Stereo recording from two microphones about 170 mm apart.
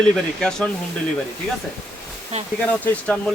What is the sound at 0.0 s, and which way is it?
Speech, 5° left (ahead or behind).